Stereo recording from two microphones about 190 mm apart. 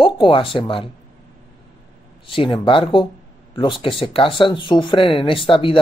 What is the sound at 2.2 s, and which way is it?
Speech, 25° left (ahead or behind).